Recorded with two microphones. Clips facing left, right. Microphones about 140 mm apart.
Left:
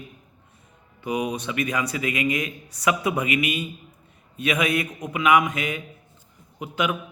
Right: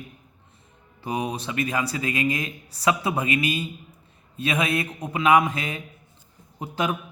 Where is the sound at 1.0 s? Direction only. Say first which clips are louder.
Left 2 dB; 30° right (ahead or behind).